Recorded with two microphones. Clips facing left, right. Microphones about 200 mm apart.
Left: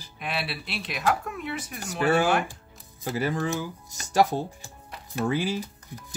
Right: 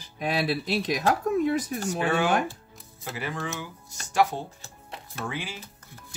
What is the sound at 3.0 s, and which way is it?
Speech, 40° left (ahead or behind).